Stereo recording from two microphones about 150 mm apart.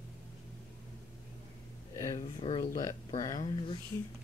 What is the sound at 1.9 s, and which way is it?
Speech, 20° left (ahead or behind).